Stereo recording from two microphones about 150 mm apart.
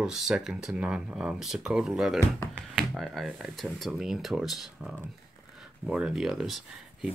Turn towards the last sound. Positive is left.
turn(degrees=0)  # may be behind; listen again after turning